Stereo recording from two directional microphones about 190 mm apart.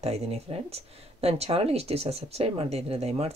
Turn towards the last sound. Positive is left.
turn(degrees=-35)  # may be behind; listen again after turning